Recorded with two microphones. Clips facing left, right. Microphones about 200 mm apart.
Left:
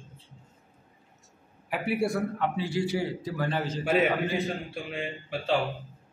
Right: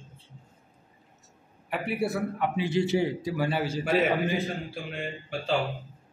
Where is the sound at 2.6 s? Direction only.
20° right (ahead or behind).